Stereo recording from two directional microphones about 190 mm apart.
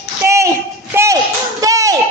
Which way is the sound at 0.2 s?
15° right (ahead or behind).